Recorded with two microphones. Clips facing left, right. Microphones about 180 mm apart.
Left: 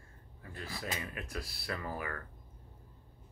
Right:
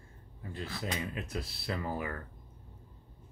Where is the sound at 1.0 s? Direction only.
25° right (ahead or behind).